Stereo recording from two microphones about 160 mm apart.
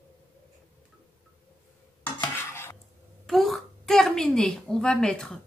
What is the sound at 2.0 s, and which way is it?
Stir, 15° left (ahead or behind).